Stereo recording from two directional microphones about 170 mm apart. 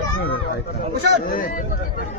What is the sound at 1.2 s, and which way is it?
Speech, 55° left (ahead or behind).